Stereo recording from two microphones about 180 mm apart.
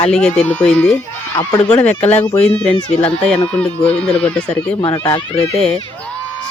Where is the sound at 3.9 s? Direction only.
5° left (ahead or behind).